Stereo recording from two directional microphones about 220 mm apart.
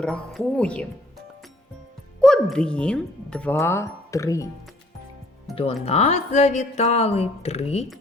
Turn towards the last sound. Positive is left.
turn(degrees=30)  # may be behind; listen again after turning